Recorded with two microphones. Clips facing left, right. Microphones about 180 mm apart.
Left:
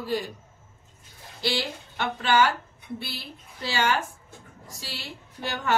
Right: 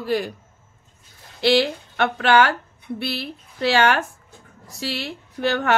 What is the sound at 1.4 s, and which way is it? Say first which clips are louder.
A woman's voice: right 11 dB; 70° right (ahead or behind).